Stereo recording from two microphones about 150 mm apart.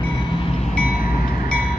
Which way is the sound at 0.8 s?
70° left (ahead or behind).